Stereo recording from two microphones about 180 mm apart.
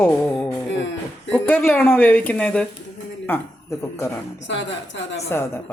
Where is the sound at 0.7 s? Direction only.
90° left.